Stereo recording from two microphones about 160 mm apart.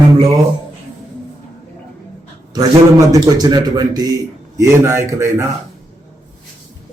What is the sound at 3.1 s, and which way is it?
A man's voice, 25° right (ahead or behind).